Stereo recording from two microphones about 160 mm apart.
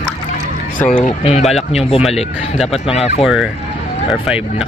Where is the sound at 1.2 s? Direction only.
40° left (ahead or behind).